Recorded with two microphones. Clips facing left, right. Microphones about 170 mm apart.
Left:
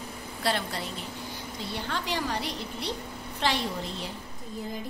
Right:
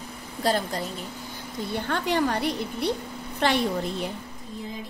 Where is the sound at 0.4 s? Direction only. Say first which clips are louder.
Right 5 dB; 40° right (ahead or behind).